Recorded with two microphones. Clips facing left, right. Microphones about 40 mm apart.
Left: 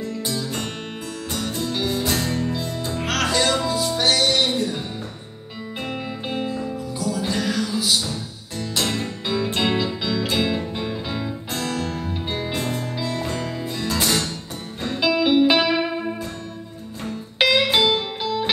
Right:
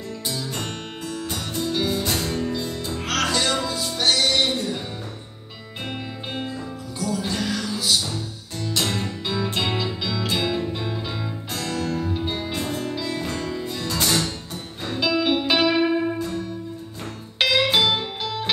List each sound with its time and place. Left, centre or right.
0.3 s music: centre
5.9 s music: centre